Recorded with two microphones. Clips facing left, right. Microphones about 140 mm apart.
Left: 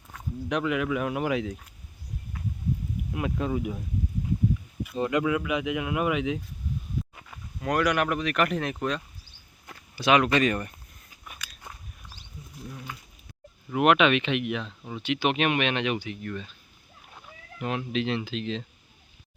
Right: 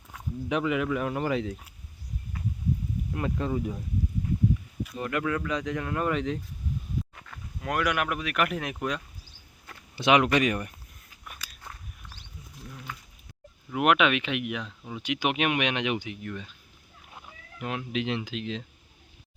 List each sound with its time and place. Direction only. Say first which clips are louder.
0.1 s speech: even; centre (ahead or behind)
3.1 s speech: left 1 dB; 5° left (ahead or behind)
4.9 s speech: left 4 dB; 20° left (ahead or behind)
7.6 s speech: left 3 dB; 5° right (ahead or behind)
9.9 s speech: even; 20° right (ahead or behind)
11.3 s biting: even; 10° left (ahead or behind)
12.6 s a sound: left 2 dB; 10° left (ahead or behind)
13.7 s speech: left 2 dB; 5° right (ahead or behind)
17.6 s speech: left 2 dB; 5° right (ahead or behind)